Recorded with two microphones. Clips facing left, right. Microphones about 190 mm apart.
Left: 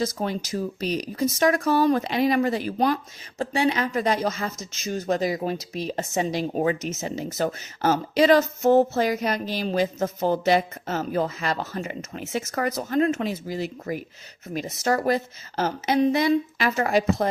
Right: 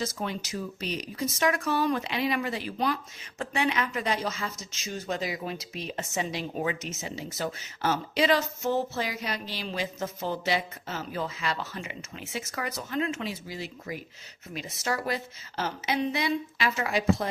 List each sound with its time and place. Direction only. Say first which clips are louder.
0.0 s speech: left 6 dB; 40° left (ahead or behind)